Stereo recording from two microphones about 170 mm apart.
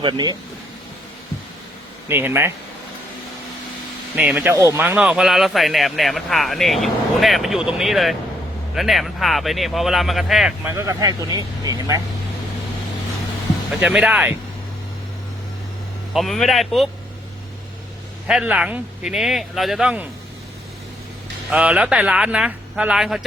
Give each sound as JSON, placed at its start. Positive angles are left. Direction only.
{"t": 0.0, "sound": "speech", "side_deg": -25}
{"t": 2.0, "sound": "speech", "side_deg": -10}
{"t": 4.1, "sound": "speech", "side_deg": -5}
{"t": 10.7, "sound": "speech", "side_deg": -15}
{"t": 13.7, "sound": "speech", "side_deg": -5}
{"t": 16.1, "sound": "speech", "side_deg": 0}
{"t": 18.3, "sound": "speech", "side_deg": -5}
{"t": 21.5, "sound": "speech", "side_deg": -5}